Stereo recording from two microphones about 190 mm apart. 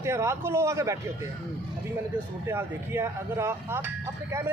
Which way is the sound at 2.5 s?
10° right (ahead or behind).